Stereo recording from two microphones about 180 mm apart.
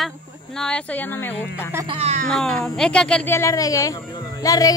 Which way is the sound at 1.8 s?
35° right (ahead or behind).